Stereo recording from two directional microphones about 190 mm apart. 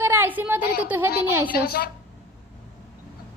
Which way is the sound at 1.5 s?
55° left (ahead or behind).